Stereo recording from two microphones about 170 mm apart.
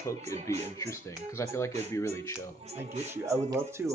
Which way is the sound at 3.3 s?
15° right (ahead or behind).